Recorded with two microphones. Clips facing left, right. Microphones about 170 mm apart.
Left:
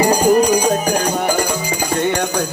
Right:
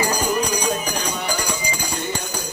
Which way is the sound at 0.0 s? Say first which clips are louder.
Left 9 dB; 40° left (ahead or behind).